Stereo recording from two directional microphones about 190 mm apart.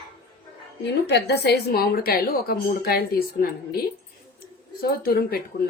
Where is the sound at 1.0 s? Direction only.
65° left (ahead or behind).